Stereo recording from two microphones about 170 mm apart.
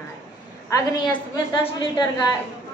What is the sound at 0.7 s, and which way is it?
A woman's voice, 20° left (ahead or behind).